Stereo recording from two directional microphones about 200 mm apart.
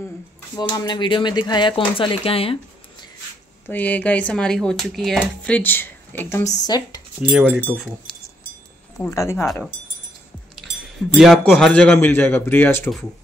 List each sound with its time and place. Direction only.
0.6 s speech: 20° left (ahead or behind)
3.6 s speech: 10° left (ahead or behind)
7.3 s speech: 5° right (ahead or behind)
8.9 s speech: 15° left (ahead or behind)
11.1 s speech: centre (ahead or behind)